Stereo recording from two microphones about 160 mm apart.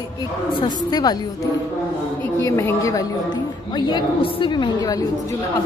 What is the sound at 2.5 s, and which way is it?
Speech, 15° left (ahead or behind).